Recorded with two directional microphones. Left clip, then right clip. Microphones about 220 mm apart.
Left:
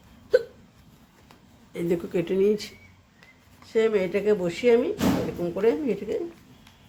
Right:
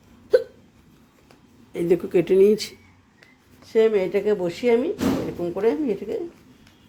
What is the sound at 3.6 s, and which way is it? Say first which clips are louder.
Speech: right 4 dB; 20° right (ahead or behind).